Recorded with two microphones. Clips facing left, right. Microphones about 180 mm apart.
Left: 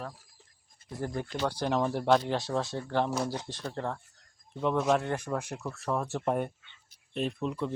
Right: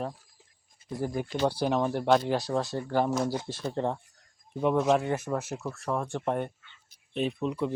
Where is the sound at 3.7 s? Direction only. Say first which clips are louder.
Right 5 dB; 20° right (ahead or behind).